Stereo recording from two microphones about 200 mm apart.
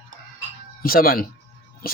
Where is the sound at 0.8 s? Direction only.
50° left (ahead or behind).